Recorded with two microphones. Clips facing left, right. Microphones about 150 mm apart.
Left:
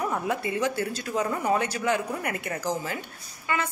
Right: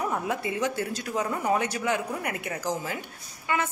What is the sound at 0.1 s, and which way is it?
A woman's voice, 10° right (ahead or behind).